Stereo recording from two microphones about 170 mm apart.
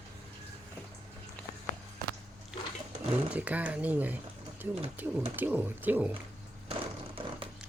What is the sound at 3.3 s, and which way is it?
Speech, 10° right (ahead or behind).